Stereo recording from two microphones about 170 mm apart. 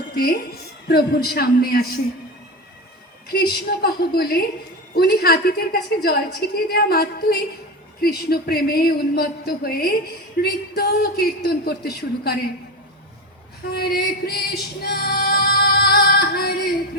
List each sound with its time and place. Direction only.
0.1 s a woman's voice: 60° left (ahead or behind)
3.3 s a man's voice: 65° left (ahead or behind)
13.7 s music: 65° left (ahead or behind)